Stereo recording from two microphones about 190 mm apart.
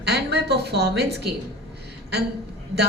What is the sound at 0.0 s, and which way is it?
A woman's voice, 60° right (ahead or behind).